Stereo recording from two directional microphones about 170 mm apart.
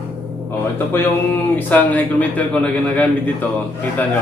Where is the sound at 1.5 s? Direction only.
10° left (ahead or behind).